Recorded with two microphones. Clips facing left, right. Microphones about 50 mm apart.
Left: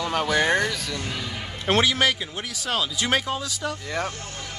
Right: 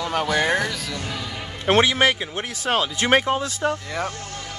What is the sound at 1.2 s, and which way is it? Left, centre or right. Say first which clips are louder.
A man's voice: right 3 dB; right.